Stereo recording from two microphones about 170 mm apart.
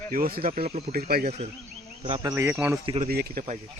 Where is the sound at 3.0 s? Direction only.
65° right (ahead or behind).